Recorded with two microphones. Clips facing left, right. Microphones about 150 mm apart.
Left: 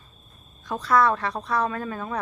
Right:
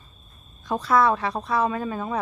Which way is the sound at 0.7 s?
10° right (ahead or behind).